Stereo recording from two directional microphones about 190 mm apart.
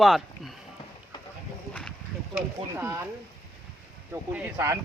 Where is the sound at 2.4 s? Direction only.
15° right (ahead or behind).